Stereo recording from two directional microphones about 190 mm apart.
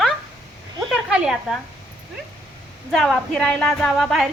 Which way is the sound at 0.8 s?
5° right (ahead or behind).